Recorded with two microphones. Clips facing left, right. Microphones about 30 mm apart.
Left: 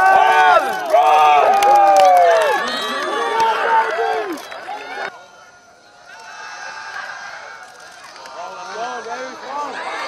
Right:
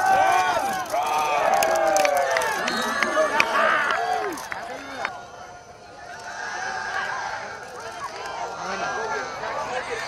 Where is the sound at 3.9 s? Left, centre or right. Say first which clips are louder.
Left 5 dB; left.